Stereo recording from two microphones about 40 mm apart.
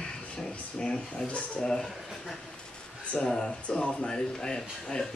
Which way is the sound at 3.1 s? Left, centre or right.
Left.